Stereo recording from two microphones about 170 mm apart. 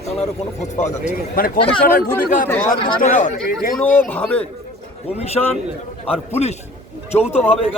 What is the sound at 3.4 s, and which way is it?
A man's voice, 5° left (ahead or behind).